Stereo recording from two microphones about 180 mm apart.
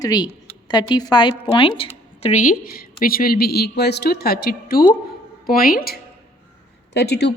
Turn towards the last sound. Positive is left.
turn(degrees=65)  # may be behind; listen again after turning